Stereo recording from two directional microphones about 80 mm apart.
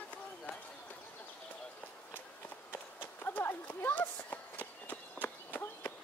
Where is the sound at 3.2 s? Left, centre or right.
Left.